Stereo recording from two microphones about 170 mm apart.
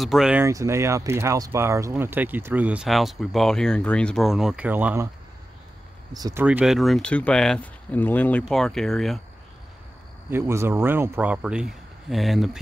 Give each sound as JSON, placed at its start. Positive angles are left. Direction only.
{"t": 0.0, "sound": "speech", "side_deg": 0}
{"t": 0.4, "sound": "speech", "side_deg": -15}
{"t": 6.1, "sound": "speech", "side_deg": -20}
{"t": 6.4, "sound": "speech", "side_deg": -5}
{"t": 10.3, "sound": "speech", "side_deg": -15}